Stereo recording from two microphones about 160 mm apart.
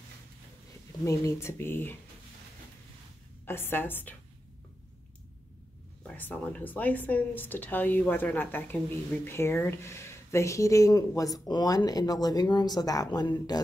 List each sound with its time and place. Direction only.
1.0 s speech: 20° left (ahead or behind)
3.4 s speech: 15° left (ahead or behind)
6.0 s speech: 10° left (ahead or behind); by 13.6 s 25° left (ahead or behind)